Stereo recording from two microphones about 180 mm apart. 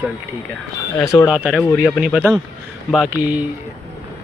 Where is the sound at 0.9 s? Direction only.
15° left (ahead or behind).